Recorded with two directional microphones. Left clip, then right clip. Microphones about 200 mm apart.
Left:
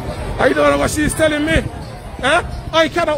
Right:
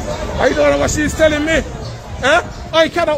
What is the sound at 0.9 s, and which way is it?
A man's voice, 15° left (ahead or behind).